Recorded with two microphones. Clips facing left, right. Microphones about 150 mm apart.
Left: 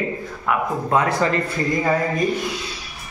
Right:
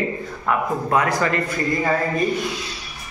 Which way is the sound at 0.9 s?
25° left (ahead or behind).